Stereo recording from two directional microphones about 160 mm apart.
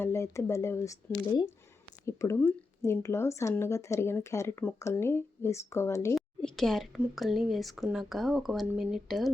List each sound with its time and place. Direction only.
0.0 s speech: 15° left (ahead or behind)
6.1 s speech: centre (ahead or behind)